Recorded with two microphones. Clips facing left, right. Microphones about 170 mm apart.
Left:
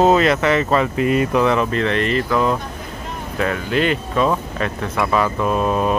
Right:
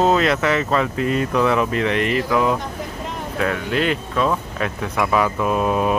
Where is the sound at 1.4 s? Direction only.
5° right (ahead or behind).